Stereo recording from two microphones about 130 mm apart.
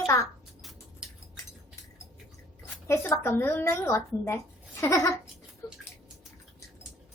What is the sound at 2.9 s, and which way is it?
A woman's voice, 20° left (ahead or behind).